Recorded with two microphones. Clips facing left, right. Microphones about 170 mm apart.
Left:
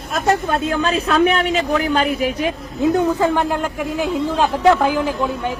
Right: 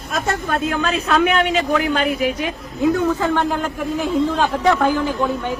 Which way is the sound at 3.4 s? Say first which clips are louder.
Even; centre (ahead or behind).